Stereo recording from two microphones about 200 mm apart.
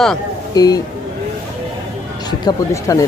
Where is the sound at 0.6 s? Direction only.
20° left (ahead or behind).